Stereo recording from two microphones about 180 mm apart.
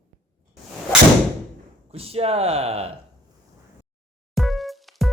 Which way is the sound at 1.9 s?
35° right (ahead or behind).